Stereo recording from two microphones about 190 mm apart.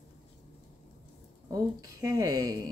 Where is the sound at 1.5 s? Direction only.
20° right (ahead or behind).